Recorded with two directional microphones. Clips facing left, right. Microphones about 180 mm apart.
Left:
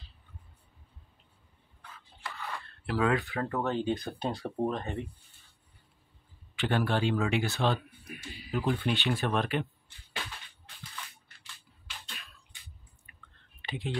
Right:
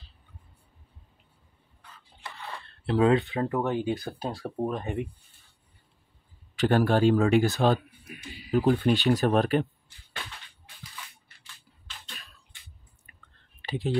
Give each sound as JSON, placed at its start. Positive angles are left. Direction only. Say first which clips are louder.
{"t": 2.8, "sound": "speech", "louder": "right 6 dB", "side_deg": -30}
{"t": 4.2, "sound": "speech", "louder": "even", "side_deg": -5}
{"t": 6.5, "sound": "speech", "louder": "right 6 dB", "side_deg": -40}
{"t": 13.6, "sound": "a sound", "louder": "right 6 dB", "side_deg": -35}